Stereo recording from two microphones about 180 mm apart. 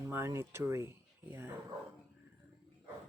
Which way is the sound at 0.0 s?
15° right (ahead or behind).